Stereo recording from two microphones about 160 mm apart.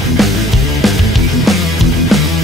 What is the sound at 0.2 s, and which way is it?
Music, centre (ahead or behind).